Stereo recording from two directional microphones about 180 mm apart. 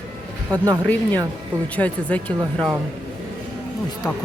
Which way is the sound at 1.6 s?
10° left (ahead or behind).